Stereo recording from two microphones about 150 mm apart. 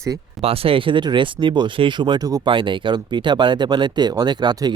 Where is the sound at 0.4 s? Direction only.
40° right (ahead or behind).